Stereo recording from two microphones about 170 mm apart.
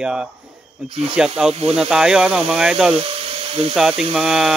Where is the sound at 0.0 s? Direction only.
5° right (ahead or behind).